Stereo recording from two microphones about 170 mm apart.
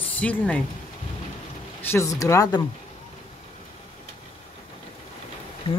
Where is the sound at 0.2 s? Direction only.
10° left (ahead or behind).